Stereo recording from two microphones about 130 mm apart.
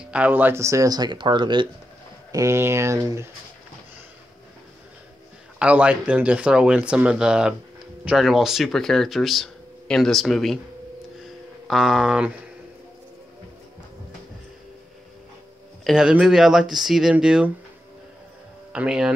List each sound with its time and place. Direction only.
0.0 s speech: 10° right (ahead or behind); by 1.7 s 35° right (ahead or behind)
2.3 s speech: 20° right (ahead or behind)
5.6 s speech: 10° right (ahead or behind)
11.1 s a sound: centre (ahead or behind)
15.8 s speech: 5° right (ahead or behind)
18.7 s speech: 5° right (ahead or behind)